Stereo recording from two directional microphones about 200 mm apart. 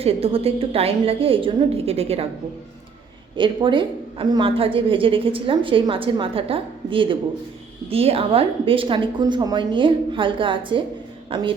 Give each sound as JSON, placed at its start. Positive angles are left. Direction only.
{"t": 0.0, "sound": "a woman's voice", "side_deg": -30}
{"t": 3.3, "sound": "a woman's voice", "side_deg": -25}